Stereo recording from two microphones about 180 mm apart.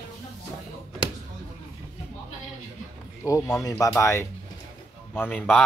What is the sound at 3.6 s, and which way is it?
Speech, 15° left (ahead or behind).